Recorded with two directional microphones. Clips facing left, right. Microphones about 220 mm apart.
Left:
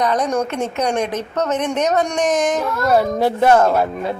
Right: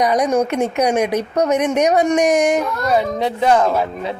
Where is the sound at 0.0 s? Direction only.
10° right (ahead or behind).